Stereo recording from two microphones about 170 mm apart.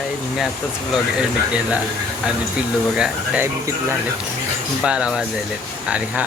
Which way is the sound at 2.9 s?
5° right (ahead or behind).